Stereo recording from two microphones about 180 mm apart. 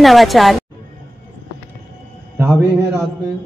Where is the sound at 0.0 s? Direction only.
Centre (ahead or behind).